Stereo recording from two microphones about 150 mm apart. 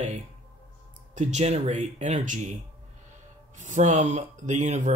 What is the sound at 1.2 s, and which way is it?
Speech, 50° right (ahead or behind).